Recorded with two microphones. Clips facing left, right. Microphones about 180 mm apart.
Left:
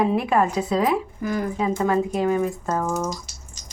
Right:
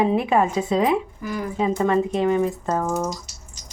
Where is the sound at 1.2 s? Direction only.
50° left (ahead or behind).